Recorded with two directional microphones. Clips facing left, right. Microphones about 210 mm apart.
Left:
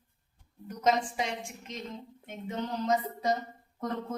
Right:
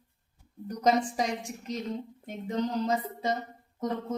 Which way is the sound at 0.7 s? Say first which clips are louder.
Right 2 dB; 35° right (ahead or behind).